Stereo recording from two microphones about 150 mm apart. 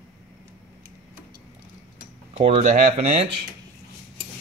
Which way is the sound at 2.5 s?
55° right (ahead or behind).